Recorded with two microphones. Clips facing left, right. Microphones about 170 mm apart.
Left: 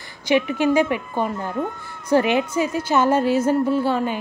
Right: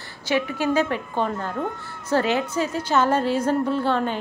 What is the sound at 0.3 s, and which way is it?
A woman's voice, 15° left (ahead or behind).